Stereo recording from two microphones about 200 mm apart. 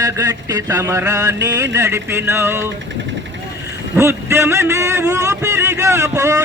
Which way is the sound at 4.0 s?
15° right (ahead or behind).